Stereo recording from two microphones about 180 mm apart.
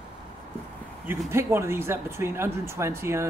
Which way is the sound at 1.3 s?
15° right (ahead or behind).